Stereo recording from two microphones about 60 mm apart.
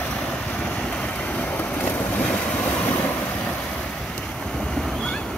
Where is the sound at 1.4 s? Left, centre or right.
Left.